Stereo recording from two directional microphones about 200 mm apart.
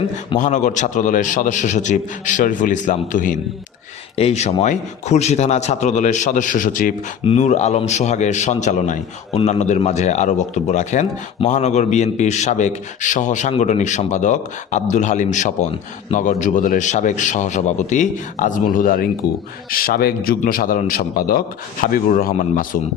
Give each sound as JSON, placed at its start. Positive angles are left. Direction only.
{"t": 0.3, "sound": "a man's voice", "side_deg": 40}
{"t": 19.2, "sound": "a man's voice", "side_deg": 55}